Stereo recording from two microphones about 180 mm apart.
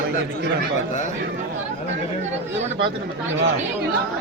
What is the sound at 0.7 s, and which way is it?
Speech, 40° left (ahead or behind).